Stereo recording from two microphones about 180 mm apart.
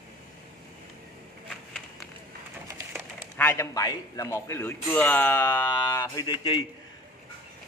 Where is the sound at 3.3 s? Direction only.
10° left (ahead or behind); by 6.7 s 30° left (ahead or behind).